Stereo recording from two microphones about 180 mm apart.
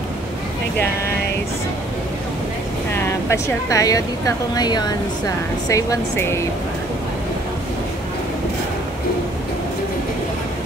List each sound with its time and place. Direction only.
2.9 s a woman's voice: 15° left (ahead or behind)